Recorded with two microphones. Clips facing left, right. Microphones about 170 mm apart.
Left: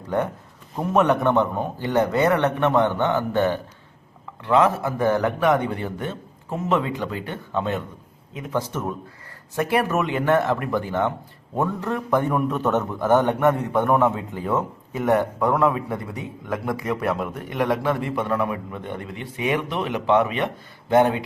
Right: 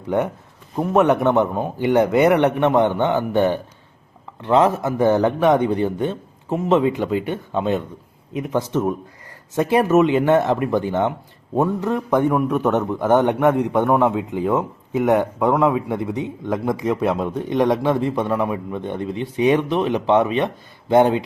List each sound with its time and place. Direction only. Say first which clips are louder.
0.8 s a man's voice: right 3 dB; 10° right (ahead or behind)